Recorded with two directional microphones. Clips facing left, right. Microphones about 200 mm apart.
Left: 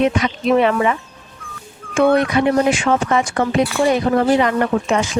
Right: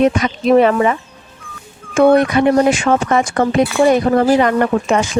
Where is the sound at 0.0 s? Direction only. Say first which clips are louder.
Right 3 dB; 45° right (ahead or behind).